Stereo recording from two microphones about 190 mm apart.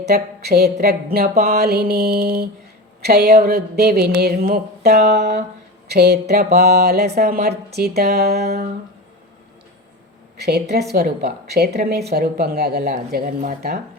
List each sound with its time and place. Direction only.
0.0 s speech: 60° right (ahead or behind)
10.4 s speech: 60° right (ahead or behind)